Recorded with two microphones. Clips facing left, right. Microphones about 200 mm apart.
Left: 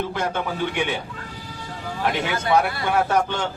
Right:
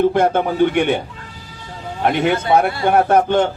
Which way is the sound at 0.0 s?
55° right (ahead or behind).